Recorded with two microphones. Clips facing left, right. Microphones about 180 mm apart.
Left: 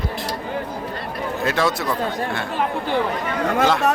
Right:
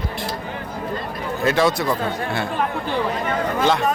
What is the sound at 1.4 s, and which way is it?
Speech, centre (ahead or behind).